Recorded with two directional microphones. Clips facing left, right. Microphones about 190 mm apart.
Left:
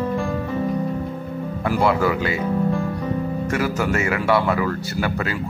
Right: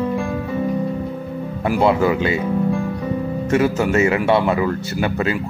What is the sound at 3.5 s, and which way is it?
Speech, 25° right (ahead or behind).